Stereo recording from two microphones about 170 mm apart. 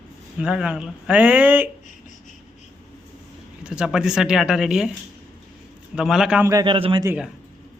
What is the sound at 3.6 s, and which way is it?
Speech, 5° right (ahead or behind).